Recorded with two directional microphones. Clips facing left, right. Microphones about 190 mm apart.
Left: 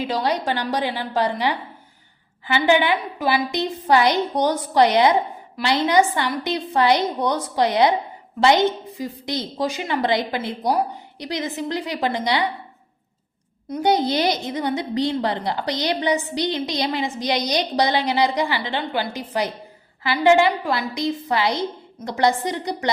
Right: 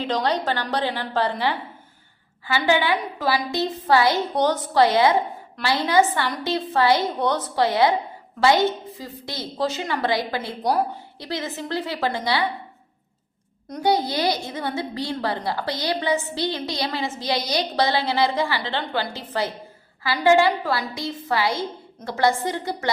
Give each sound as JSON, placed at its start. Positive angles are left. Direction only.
{"t": 0.0, "sound": "a woman's voice", "side_deg": 10}
{"t": 13.8, "sound": "a woman's voice", "side_deg": 20}